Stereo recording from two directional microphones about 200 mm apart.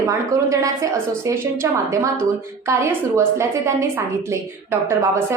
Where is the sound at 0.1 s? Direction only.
15° right (ahead or behind).